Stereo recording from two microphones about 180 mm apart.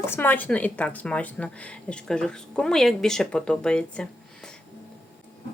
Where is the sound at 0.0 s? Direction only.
10° left (ahead or behind).